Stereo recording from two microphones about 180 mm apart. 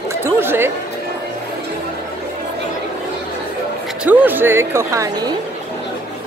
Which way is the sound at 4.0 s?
10° right (ahead or behind).